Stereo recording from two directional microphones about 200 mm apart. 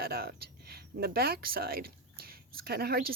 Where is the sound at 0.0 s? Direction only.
50° right (ahead or behind).